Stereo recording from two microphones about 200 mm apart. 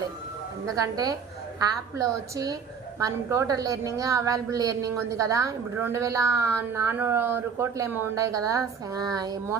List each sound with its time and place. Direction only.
0.8 s a woman's voice: 15° right (ahead or behind)